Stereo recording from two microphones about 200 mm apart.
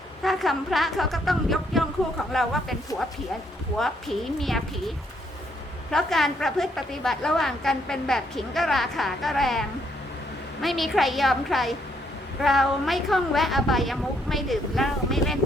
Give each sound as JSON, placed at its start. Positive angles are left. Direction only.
{"t": 0.2, "sound": "a woman's voice", "side_deg": 0}
{"t": 4.4, "sound": "a woman's voice", "side_deg": 0}
{"t": 5.9, "sound": "a woman's voice", "side_deg": 0}